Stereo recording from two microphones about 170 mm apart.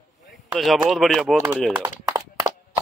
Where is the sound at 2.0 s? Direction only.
20° right (ahead or behind).